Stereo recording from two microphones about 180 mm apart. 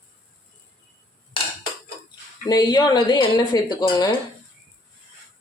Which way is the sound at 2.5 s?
20° left (ahead or behind).